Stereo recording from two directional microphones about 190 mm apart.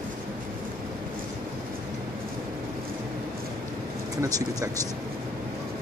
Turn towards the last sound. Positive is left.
turn(degrees=-20)  # may be behind; listen again after turning